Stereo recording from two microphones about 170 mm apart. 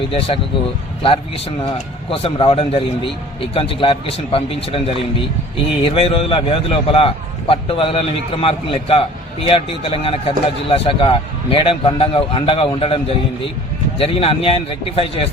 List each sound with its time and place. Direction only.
1.6 s a man's voice: 30° left (ahead or behind)